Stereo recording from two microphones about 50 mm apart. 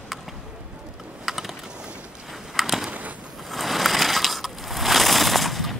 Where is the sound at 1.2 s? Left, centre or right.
Centre.